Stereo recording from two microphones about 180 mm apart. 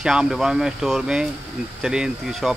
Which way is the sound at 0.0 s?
5° right (ahead or behind).